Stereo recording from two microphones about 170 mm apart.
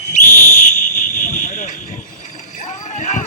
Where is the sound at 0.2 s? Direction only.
45° left (ahead or behind).